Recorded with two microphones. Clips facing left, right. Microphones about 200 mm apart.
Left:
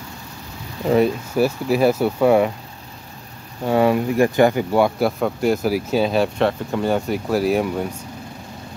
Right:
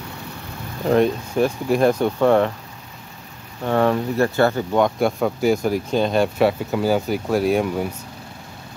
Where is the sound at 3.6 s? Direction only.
10° left (ahead or behind).